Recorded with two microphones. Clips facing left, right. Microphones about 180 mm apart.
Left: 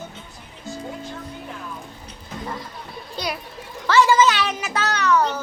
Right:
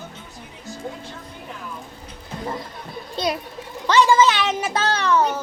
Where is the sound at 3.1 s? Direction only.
25° right (ahead or behind).